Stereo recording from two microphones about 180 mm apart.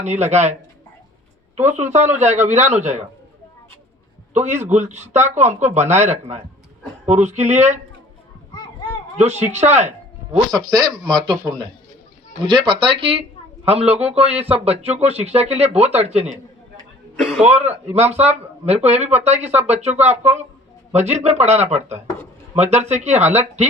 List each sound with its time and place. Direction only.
0.0 s speech: 40° right (ahead or behind)
1.5 s speech: 40° right (ahead or behind)
4.4 s speech: 40° right (ahead or behind)
9.1 s speech: 35° right (ahead or behind)
10.3 s speech: 25° right (ahead or behind)
12.5 s speech: 30° right (ahead or behind)
17.4 s speech: 35° right (ahead or behind)
19.9 s speech: 10° right (ahead or behind)
21.1 s speech: 35° right (ahead or behind)
21.8 s speech: 15° right (ahead or behind)
22.5 s speech: 35° right (ahead or behind)